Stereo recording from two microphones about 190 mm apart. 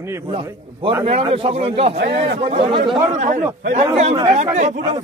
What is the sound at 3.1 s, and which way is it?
A man's voice, 40° right (ahead or behind).